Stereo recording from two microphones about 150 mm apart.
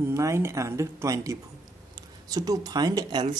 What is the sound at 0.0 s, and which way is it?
Speech, 20° right (ahead or behind).